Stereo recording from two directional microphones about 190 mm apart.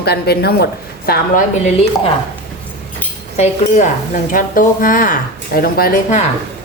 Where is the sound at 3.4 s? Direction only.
40° left (ahead or behind).